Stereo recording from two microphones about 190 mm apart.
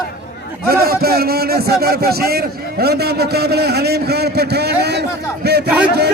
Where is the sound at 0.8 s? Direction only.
55° right (ahead or behind).